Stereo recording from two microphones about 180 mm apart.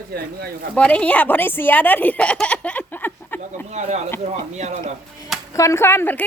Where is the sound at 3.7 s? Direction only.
40° right (ahead or behind).